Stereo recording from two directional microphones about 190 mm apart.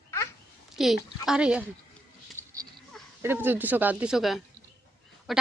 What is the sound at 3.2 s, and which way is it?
Speech, 10° right (ahead or behind).